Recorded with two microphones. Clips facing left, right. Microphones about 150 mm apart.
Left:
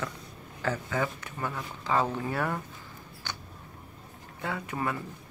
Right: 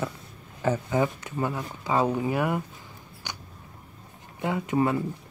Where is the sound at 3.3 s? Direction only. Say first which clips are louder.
Right 1 dB; 15° right (ahead or behind).